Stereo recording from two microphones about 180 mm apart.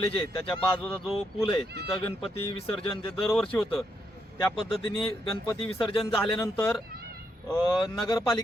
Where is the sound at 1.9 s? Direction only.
15° left (ahead or behind).